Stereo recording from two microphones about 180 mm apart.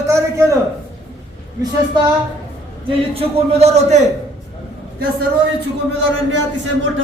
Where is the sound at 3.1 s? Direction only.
35° right (ahead or behind).